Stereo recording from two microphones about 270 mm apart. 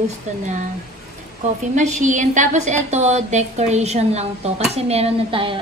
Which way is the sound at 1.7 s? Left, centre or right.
Right.